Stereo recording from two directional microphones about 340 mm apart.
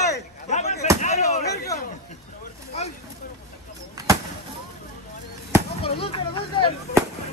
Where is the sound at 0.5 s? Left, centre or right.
Centre.